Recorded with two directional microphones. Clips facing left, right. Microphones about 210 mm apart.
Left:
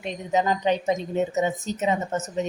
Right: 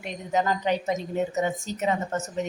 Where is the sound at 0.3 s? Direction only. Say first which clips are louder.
Left 2 dB; 20° left (ahead or behind).